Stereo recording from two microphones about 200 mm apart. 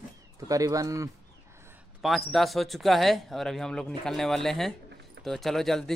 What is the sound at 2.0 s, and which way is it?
Speech, centre (ahead or behind).